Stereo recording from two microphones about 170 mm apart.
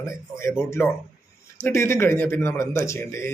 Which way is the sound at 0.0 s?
15° left (ahead or behind).